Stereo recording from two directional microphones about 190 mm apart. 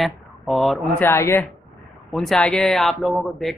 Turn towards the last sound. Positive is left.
turn(degrees=0)  # may be behind; listen again after turning